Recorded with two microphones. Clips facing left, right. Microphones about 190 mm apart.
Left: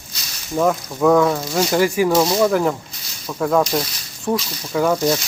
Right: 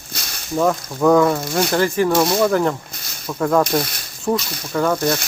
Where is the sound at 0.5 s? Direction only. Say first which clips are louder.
Even; 5° left (ahead or behind).